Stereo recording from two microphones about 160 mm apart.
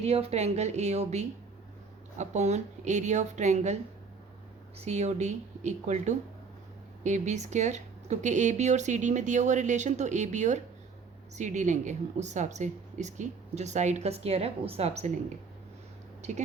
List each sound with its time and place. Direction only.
0.0 s a woman's voice: 40° right (ahead or behind)
4.8 s a woman's voice: 45° right (ahead or behind)